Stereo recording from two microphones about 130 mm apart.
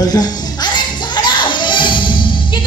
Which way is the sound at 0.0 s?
30° left (ahead or behind).